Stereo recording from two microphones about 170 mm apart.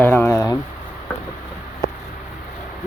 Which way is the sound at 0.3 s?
20° left (ahead or behind).